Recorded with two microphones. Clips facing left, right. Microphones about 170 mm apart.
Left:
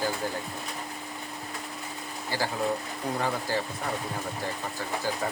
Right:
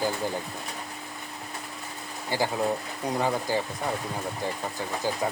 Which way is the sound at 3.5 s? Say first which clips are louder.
Right 2 dB; 15° right (ahead or behind).